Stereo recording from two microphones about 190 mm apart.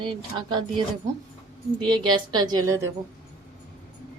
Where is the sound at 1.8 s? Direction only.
25° right (ahead or behind).